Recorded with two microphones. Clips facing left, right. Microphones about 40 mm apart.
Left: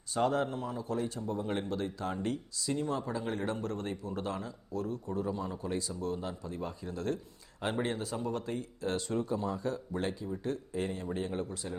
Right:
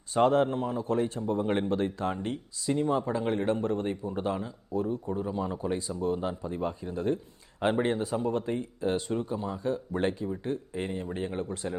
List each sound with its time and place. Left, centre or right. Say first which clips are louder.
0.1 s speech: right 7 dB; right; by 9.6 s centre
9.6 s speech: right 5 dB; right
10.3 s speech: right 2 dB; right